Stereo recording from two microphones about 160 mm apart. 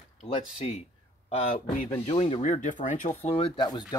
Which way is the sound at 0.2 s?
40° left (ahead or behind).